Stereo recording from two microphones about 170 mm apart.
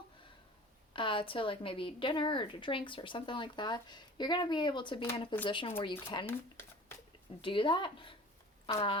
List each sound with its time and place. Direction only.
0.9 s a woman's voice: 30° left (ahead or behind)
7.4 s a woman's voice: 30° left (ahead or behind)